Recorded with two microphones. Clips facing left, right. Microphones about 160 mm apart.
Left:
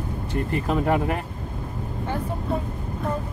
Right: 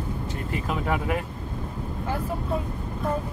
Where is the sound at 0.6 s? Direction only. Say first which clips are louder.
Left 5 dB; 45° left (ahead or behind).